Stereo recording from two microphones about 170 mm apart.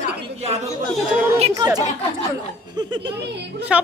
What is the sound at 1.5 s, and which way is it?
Speech, 20° right (ahead or behind).